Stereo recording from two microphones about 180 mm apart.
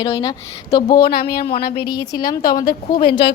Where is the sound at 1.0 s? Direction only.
55° left (ahead or behind).